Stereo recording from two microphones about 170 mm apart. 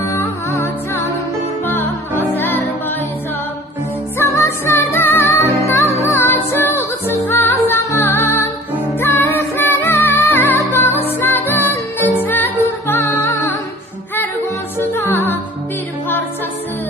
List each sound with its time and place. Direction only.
0.1 s music: 15° left (ahead or behind)
1.7 s music: 10° left (ahead or behind)
4.2 s music: 15° left (ahead or behind)
14.8 s music: 10° left (ahead or behind)